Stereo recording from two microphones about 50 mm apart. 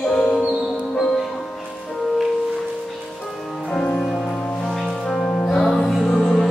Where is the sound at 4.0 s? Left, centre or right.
Centre.